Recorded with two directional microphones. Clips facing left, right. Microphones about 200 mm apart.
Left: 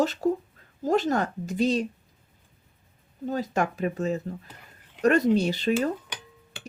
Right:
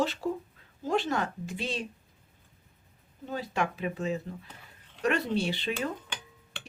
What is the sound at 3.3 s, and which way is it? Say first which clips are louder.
Speech: left 5 dB; 45° left (ahead or behind).